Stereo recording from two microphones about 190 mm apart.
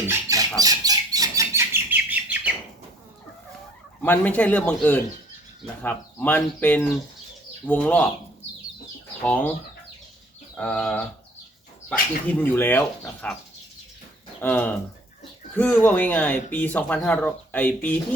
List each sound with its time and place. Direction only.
0.1 s a sound: 15° right (ahead or behind)
0.6 s bird: 20° right (ahead or behind)
4.0 s speech: 10° left (ahead or behind)
9.2 s speech: 10° left (ahead or behind)
10.6 s speech: 5° left (ahead or behind)
14.4 s speech: 10° left (ahead or behind)